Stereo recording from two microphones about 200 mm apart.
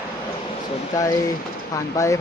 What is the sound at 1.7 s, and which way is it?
Speech, 15° left (ahead or behind).